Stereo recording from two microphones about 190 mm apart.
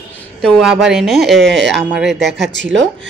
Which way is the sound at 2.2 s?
65° right (ahead or behind).